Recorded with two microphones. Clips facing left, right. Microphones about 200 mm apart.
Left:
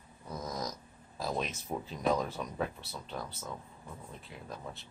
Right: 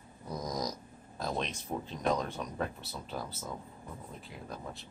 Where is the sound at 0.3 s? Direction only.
15° right (ahead or behind).